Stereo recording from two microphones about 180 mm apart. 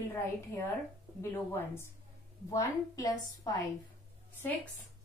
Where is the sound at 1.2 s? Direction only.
15° left (ahead or behind).